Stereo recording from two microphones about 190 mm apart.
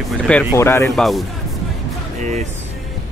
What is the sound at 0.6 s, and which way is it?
Speech, 15° left (ahead or behind).